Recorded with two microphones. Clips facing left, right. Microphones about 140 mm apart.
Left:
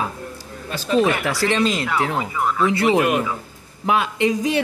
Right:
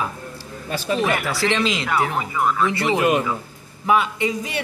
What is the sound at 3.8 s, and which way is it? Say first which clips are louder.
Speech: left 1 dB; 90° left.